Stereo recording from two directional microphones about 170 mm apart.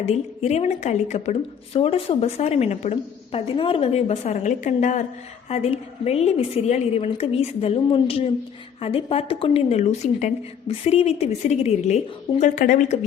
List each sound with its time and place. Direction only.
0.0 s a woman's voice: 40° left (ahead or behind)